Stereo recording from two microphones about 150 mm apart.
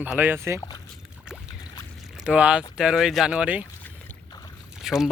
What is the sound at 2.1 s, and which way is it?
Speech, 5° right (ahead or behind).